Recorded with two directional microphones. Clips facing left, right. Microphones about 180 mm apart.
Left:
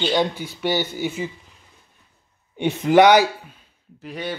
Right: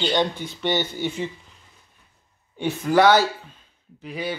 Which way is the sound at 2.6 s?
20° left (ahead or behind).